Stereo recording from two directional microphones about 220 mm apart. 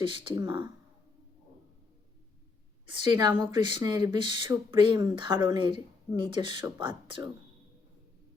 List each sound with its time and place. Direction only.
0.0 s speech: 20° right (ahead or behind)
2.8 s speech: 20° right (ahead or behind)